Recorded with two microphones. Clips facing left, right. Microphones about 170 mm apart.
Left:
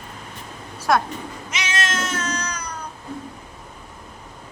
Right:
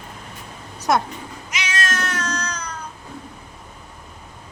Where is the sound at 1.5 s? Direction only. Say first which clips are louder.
Even; 25° left (ahead or behind).